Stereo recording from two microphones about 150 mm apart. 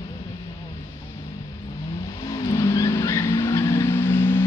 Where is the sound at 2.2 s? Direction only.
25° left (ahead or behind).